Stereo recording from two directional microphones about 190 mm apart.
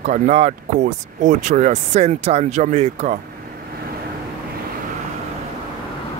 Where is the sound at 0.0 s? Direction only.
40° right (ahead or behind).